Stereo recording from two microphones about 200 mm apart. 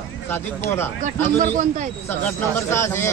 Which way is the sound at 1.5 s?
40° right (ahead or behind).